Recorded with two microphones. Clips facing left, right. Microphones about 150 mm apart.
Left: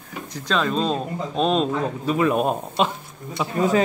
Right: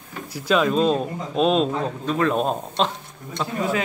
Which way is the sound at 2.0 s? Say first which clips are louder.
Left 1 dB; 10° left (ahead or behind).